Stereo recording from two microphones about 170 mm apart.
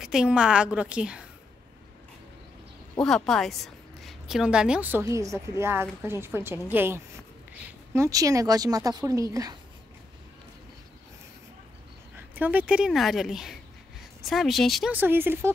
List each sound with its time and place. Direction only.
0.0 s a woman's voice: 5° right (ahead or behind)
3.3 s a woman's voice: centre (ahead or behind); by 9.6 s 20° right (ahead or behind)
12.4 s a woman's voice: 10° right (ahead or behind)
14.9 s a woman's voice: 10° right (ahead or behind)